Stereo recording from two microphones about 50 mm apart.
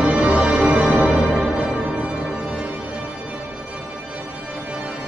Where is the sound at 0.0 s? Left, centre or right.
Right.